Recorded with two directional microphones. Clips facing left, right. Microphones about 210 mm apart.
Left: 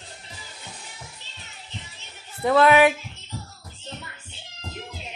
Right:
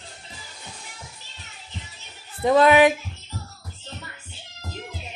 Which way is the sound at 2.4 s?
20° right (ahead or behind).